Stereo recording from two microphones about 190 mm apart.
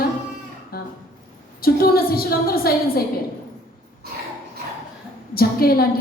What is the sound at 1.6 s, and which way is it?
A woman's voice, 50° left (ahead or behind).